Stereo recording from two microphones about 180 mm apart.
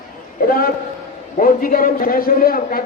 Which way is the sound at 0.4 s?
55° left (ahead or behind).